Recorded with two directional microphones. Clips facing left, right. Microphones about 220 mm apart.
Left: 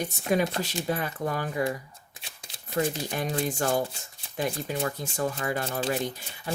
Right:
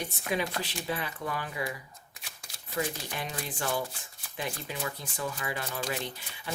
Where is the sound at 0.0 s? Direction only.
45° left (ahead or behind).